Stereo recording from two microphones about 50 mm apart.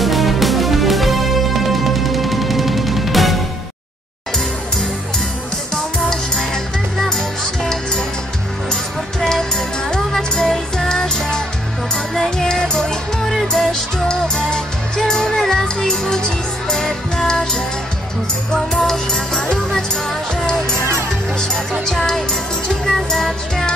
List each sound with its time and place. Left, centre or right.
0.0 s music: centre
6.0 s music: centre
9.8 s music: centre
21.8 s music: centre